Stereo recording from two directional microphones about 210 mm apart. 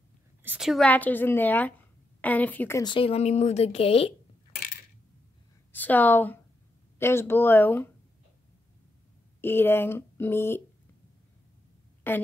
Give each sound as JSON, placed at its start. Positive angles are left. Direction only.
{"t": 0.4, "sound": "a woman's voice", "side_deg": -5}
{"t": 2.8, "sound": "speech", "side_deg": 25}
{"t": 5.7, "sound": "a woman's voice", "side_deg": 10}
{"t": 9.4, "sound": "a woman's voice", "side_deg": 10}
{"t": 12.1, "sound": "a woman's voice", "side_deg": 10}